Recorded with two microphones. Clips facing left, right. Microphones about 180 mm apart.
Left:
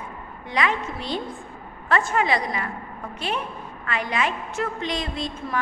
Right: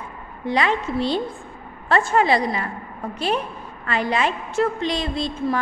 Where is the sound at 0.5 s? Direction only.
30° right (ahead or behind).